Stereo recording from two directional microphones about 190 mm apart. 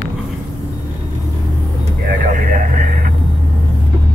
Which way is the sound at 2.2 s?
40° right (ahead or behind).